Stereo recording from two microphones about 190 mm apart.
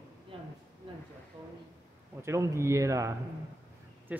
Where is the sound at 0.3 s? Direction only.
30° right (ahead or behind).